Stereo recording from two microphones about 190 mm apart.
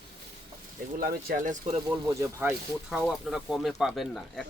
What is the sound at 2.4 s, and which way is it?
Speech, 10° right (ahead or behind).